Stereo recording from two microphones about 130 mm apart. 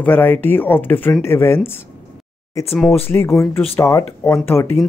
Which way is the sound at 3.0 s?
20° left (ahead or behind).